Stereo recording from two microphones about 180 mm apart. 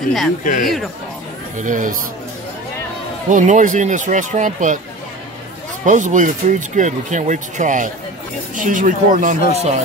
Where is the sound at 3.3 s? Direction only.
45° right (ahead or behind).